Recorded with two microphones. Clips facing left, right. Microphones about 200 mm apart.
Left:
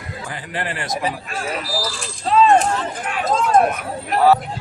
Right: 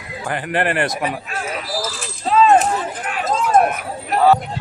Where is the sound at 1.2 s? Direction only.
Centre (ahead or behind).